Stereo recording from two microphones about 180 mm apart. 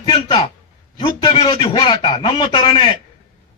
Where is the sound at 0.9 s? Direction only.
30° left (ahead or behind).